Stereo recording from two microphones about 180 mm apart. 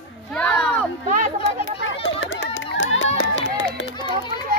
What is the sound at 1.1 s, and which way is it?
Speech, 45° right (ahead or behind).